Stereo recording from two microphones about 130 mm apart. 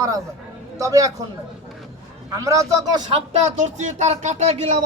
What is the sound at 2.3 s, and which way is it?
Speech, 25° right (ahead or behind).